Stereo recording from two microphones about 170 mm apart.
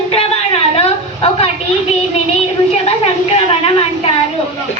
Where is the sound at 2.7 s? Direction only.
35° left (ahead or behind).